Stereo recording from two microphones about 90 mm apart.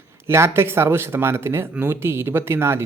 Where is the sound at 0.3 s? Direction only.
30° right (ahead or behind).